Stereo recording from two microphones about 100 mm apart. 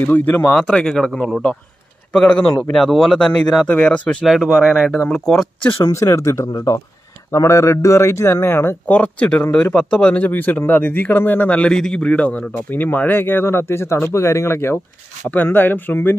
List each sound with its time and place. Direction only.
0.0 s speech: 20° left (ahead or behind)
0.6 s speech: 5° left (ahead or behind)
4.3 s speech: 5° right (ahead or behind)
5.9 s speech: 30° left (ahead or behind)